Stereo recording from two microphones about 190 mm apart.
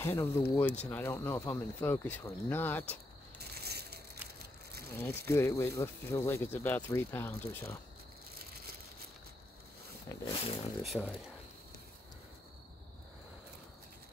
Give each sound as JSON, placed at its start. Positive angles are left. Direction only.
{"t": 0.0, "sound": "speech", "side_deg": 10}
{"t": 3.5, "sound": "crushing", "side_deg": -55}
{"t": 4.9, "sound": "speech", "side_deg": 15}
{"t": 10.2, "sound": "speech", "side_deg": 30}
{"t": 10.8, "sound": "speech", "side_deg": 0}